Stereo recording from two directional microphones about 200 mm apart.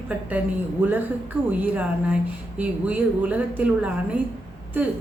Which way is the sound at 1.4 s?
5° right (ahead or behind).